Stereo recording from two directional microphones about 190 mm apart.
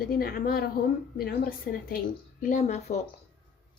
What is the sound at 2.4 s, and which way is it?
Speech, 40° left (ahead or behind).